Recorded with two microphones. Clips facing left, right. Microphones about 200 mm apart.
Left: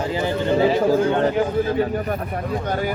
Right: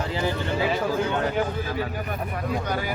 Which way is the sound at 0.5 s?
45° left (ahead or behind).